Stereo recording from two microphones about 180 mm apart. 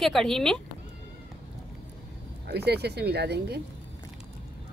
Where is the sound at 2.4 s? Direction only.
65° right (ahead or behind).